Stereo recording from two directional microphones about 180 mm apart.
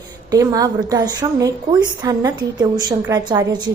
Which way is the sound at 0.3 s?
20° right (ahead or behind).